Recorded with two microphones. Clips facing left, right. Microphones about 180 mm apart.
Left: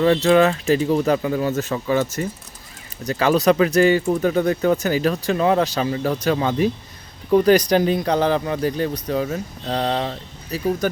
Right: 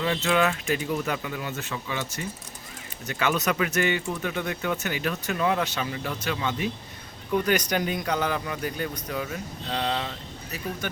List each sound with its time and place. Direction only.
0.0 s speech: 40° left (ahead or behind)